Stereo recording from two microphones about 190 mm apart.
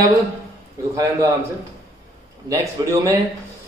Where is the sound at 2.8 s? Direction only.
20° right (ahead or behind).